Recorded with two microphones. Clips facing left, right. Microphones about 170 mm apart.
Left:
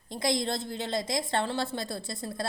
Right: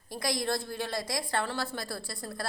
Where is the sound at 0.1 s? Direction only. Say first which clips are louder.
Left 2 dB; 25° left (ahead or behind).